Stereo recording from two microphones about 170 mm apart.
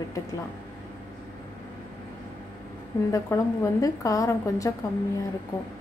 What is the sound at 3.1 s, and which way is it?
A woman's voice, 20° left (ahead or behind).